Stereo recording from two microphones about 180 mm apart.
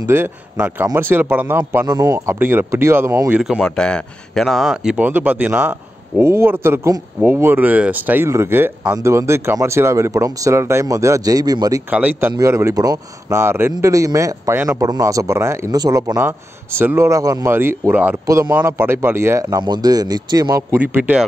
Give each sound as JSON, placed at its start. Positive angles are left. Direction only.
{"t": 0.0, "sound": "speech", "side_deg": -10}
{"t": 11.9, "sound": "a man's voice", "side_deg": -10}